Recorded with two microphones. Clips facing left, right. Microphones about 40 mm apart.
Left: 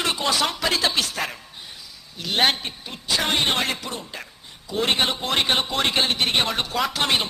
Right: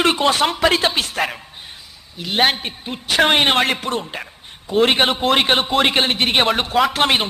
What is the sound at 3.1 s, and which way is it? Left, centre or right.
A woman's voice, right.